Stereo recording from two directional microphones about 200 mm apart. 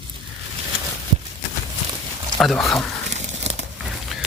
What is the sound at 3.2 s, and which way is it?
Crumpling, 35° right (ahead or behind).